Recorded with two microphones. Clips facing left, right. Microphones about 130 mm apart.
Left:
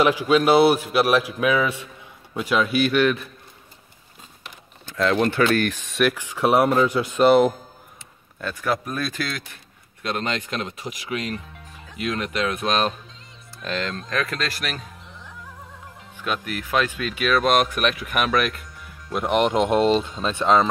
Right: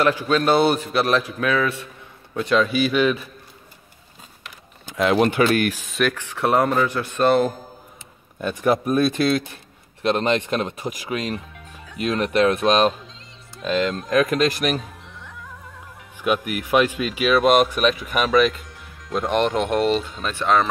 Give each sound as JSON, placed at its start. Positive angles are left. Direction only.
{"t": 0.0, "sound": "a man's voice", "side_deg": 10}
{"t": 4.8, "sound": "speech", "side_deg": -15}
{"t": 8.4, "sound": "speech", "side_deg": -20}
{"t": 16.2, "sound": "speech", "side_deg": -10}
{"t": 19.1, "sound": "speech", "side_deg": 10}